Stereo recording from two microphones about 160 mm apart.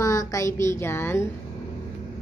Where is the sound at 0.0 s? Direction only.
20° left (ahead or behind).